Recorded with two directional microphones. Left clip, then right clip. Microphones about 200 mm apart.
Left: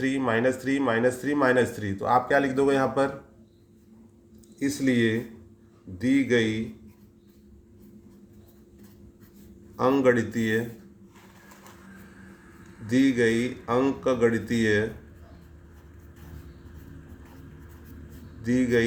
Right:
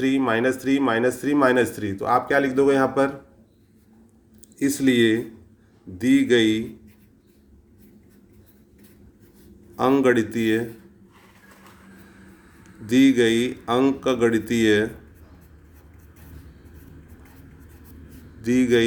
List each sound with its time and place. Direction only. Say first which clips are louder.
0.0 s a man's voice: right 3 dB; 30° right (ahead or behind)
4.6 s speech: right 5 dB; 35° right (ahead or behind)
9.7 s speech: right 3 dB; 35° right (ahead or behind)
12.9 s speech: right 5 dB; 35° right (ahead or behind)
18.4 s speech: right 5 dB; 35° right (ahead or behind)